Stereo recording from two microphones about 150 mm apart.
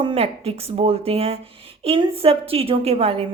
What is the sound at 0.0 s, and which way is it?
A woman's voice, 40° right (ahead or behind).